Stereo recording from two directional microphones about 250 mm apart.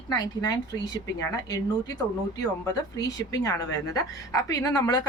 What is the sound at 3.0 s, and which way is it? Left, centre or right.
A woman's voice, centre.